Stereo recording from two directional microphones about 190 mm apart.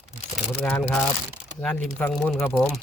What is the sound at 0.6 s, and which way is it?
Speech, 5° left (ahead or behind).